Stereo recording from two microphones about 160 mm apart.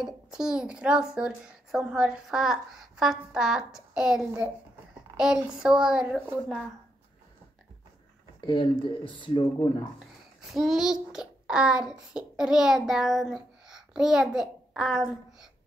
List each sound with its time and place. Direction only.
0.0 s a woman's voice: 5° right (ahead or behind)
8.4 s speech: 30° left (ahead or behind)
9.9 s a child's voice: centre (ahead or behind)